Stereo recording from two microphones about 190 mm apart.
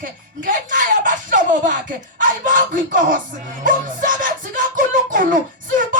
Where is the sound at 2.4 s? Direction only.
45° right (ahead or behind).